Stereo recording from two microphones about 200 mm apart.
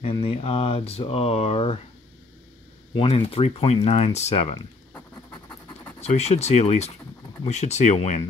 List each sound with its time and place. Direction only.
0.0 s speech: 30° left (ahead or behind)
3.0 s speech: 30° left (ahead or behind)
5.9 s speech: 35° left (ahead or behind)